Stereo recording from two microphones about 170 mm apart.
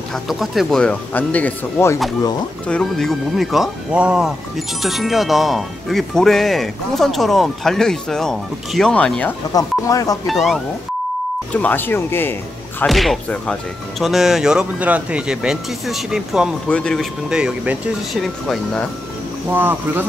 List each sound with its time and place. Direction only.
0.1 s speech: centre (ahead or behind)
9.5 s speech: 20° left (ahead or behind)
10.2 s speech: centre (ahead or behind)
12.8 s speech: centre (ahead or behind)
19.5 s speech: 10° right (ahead or behind)